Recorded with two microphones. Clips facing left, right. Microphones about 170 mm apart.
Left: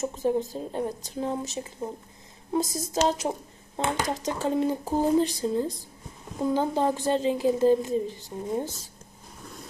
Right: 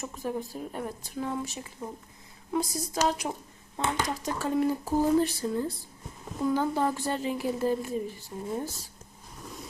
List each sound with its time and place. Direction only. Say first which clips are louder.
0.0 s speech: left 7 dB; 25° left (ahead or behind)